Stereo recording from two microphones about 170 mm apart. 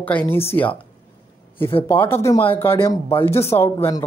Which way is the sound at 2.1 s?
15° left (ahead or behind).